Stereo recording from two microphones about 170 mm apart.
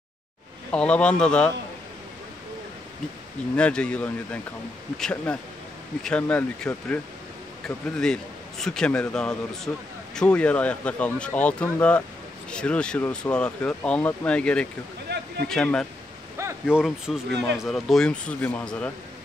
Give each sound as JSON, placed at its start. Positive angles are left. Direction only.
{"t": 0.7, "sound": "a man's voice", "side_deg": 5}
{"t": 3.5, "sound": "a man's voice", "side_deg": 5}
{"t": 15.1, "sound": "a sound", "side_deg": -75}
{"t": 15.4, "sound": "a man's voice", "side_deg": 5}